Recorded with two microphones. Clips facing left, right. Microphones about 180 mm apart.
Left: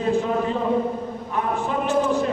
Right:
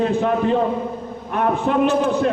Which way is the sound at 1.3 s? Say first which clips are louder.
Right 6 dB; 65° right (ahead or behind).